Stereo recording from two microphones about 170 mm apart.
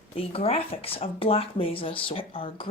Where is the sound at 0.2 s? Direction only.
35° left (ahead or behind).